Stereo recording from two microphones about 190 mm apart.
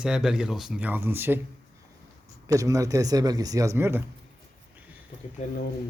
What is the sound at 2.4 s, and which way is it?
A man's voice, 20° right (ahead or behind).